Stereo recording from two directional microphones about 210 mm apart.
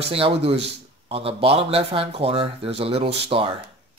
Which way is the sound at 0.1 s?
30° right (ahead or behind).